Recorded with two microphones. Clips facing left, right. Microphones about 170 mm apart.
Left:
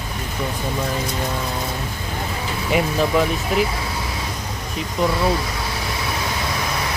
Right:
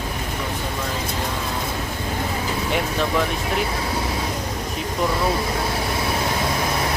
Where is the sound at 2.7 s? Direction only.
5° left (ahead or behind).